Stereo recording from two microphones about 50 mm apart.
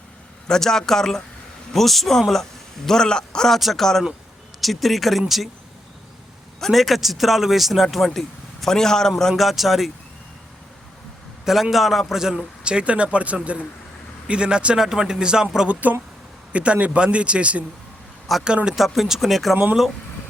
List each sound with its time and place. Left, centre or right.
0.4 s a man's voice: centre
6.6 s a man's voice: centre
9.3 s speech: centre
11.4 s a man's voice: centre
15.7 s a man's voice: right; by 19.5 s centre